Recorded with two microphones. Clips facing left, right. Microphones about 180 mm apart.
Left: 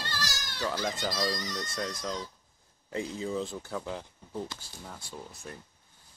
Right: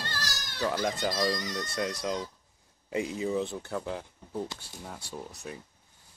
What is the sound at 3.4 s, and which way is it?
Speech, 65° right (ahead or behind).